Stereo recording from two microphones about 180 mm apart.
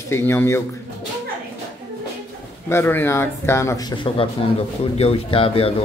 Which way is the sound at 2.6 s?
15° left (ahead or behind).